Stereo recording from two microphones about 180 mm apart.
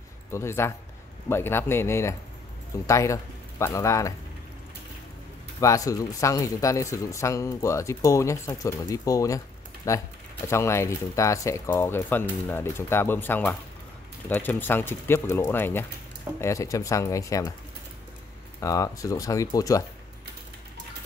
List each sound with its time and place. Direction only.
0.3 s speech: 15° left (ahead or behind)
5.6 s speech: 20° left (ahead or behind)
18.6 s speech: 20° left (ahead or behind)